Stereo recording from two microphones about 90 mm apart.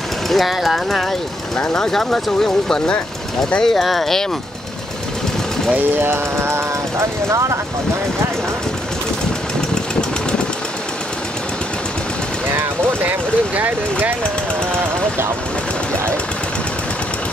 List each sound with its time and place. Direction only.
0.3 s speech: centre (ahead or behind)
5.7 s speech: 20° right (ahead or behind)
12.4 s vehicle: 25° right (ahead or behind)
13.6 s speech: 20° right (ahead or behind)